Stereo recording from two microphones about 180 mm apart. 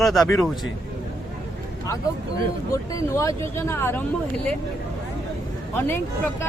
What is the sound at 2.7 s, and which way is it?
Speech, 15° left (ahead or behind).